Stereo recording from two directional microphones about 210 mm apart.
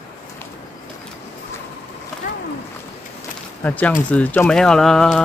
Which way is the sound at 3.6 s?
5° left (ahead or behind).